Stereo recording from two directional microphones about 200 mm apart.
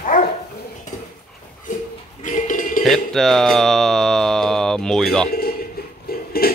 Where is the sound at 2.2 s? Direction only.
40° left (ahead or behind).